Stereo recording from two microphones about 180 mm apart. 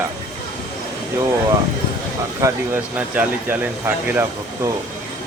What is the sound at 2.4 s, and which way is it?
Speech, 10° right (ahead or behind).